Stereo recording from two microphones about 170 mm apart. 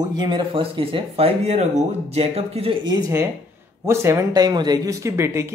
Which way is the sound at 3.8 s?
15° right (ahead or behind).